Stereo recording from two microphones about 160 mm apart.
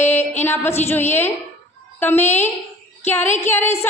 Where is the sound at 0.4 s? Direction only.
15° left (ahead or behind).